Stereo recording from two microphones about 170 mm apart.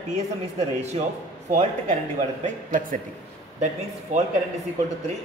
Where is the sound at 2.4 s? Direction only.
55° right (ahead or behind).